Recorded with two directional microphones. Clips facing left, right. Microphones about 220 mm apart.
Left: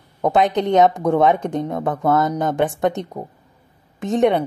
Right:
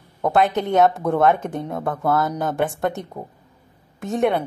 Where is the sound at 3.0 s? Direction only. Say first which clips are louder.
Left 4 dB; 20° left (ahead or behind).